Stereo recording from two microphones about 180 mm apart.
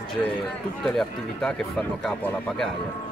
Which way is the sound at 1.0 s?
Centre (ahead or behind).